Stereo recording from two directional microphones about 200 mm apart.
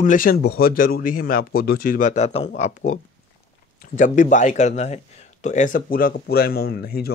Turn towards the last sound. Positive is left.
turn(degrees=50)  # may be behind; listen again after turning